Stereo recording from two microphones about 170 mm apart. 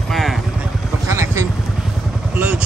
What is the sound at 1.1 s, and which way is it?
Vehicle, 15° right (ahead or behind).